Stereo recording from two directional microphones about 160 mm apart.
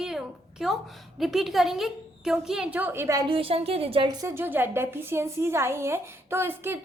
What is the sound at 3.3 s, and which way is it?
Speech, 35° right (ahead or behind).